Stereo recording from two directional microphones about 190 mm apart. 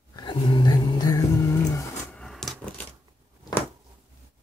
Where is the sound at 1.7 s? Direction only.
5° left (ahead or behind).